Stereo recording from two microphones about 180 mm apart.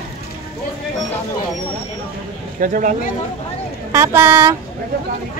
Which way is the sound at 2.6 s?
50° right (ahead or behind).